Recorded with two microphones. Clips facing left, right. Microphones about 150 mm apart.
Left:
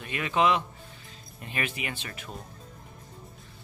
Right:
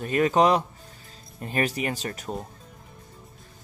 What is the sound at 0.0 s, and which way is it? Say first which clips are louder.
Speech: right 6 dB; 40° right (ahead or behind).